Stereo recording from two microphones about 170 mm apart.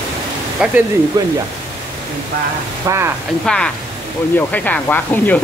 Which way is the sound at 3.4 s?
5° left (ahead or behind).